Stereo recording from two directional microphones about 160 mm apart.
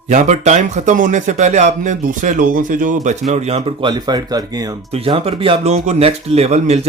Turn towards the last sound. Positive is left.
turn(degrees=-40)  # may be behind; listen again after turning